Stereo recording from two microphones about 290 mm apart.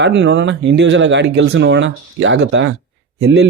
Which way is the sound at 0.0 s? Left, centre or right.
Right.